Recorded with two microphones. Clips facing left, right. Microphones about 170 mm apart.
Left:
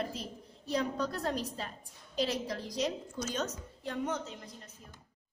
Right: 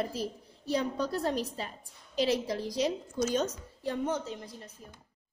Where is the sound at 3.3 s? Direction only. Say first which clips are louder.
Right 6 dB; 30° right (ahead or behind).